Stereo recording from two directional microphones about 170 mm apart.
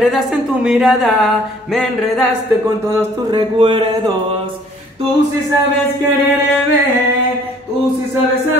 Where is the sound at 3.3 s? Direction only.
30° right (ahead or behind).